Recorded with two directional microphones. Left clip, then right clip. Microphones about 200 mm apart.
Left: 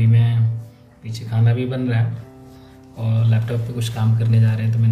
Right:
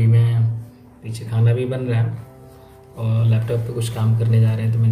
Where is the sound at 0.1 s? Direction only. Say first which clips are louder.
Even; 10° right (ahead or behind).